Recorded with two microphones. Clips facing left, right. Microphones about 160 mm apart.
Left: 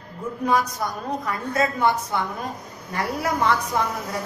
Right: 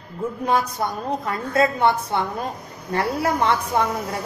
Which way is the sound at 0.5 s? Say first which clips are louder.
Even; 25° right (ahead or behind).